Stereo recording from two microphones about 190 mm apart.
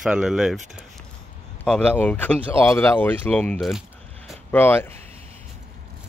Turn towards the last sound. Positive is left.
turn(degrees=10)  # may be behind; listen again after turning